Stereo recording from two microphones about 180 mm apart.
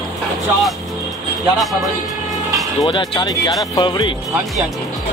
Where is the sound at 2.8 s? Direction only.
25° left (ahead or behind).